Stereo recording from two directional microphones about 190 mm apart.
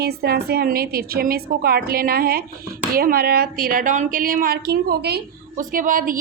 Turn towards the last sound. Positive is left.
turn(degrees=-45)  # may be behind; listen again after turning